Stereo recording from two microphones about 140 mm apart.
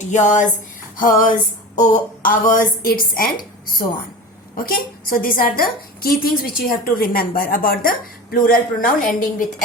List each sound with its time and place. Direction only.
0.1 s speech: 60° left (ahead or behind)
0.9 s a sound: 75° left (ahead or behind)
2.5 s a woman's voice: 85° left
4.5 s speech: 90° left